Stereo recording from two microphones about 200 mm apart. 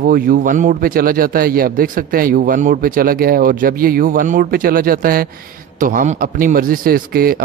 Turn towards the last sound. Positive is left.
turn(degrees=-50)  # may be behind; listen again after turning